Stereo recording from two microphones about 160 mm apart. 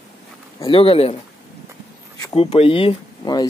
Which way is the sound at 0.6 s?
35° left (ahead or behind).